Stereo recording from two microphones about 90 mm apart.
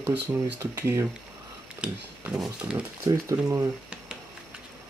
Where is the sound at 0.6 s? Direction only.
35° right (ahead or behind).